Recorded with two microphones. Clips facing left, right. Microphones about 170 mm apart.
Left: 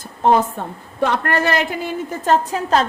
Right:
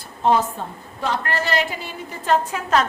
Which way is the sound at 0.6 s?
55° left (ahead or behind).